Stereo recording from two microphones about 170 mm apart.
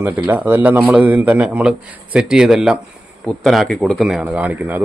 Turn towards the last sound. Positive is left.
turn(degrees=-10)  # may be behind; listen again after turning